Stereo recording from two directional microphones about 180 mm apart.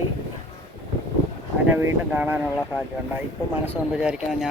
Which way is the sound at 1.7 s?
10° right (ahead or behind).